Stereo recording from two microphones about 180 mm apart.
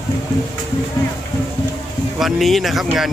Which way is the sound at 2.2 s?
Centre (ahead or behind).